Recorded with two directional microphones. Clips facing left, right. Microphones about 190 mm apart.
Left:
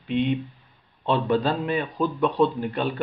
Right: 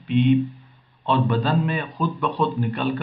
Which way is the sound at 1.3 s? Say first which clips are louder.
Even; 25° left (ahead or behind).